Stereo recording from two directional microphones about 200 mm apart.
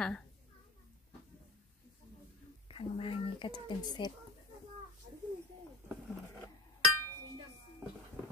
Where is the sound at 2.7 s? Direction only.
30° left (ahead or behind).